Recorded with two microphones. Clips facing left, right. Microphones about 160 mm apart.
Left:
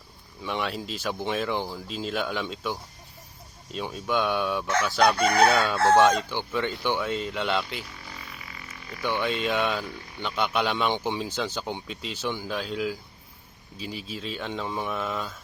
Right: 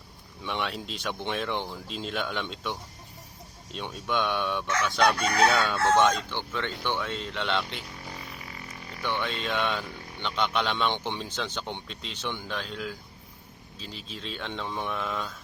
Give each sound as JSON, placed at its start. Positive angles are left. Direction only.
{"t": 0.4, "sound": "speech", "side_deg": 0}
{"t": 4.6, "sound": "chicken", "side_deg": 30}
{"t": 5.9, "sound": "speech", "side_deg": 10}
{"t": 9.0, "sound": "speech", "side_deg": 10}